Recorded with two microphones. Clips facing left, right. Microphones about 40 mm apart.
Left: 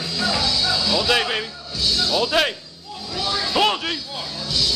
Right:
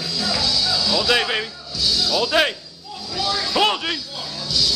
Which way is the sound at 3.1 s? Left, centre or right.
Left.